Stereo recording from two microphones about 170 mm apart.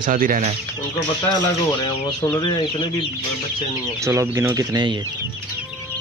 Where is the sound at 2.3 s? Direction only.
30° left (ahead or behind).